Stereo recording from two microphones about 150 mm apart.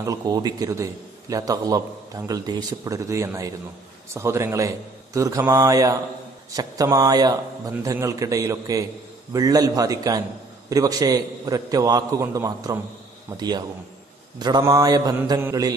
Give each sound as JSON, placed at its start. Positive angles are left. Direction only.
{"t": 0.0, "sound": "a man's voice", "side_deg": -25}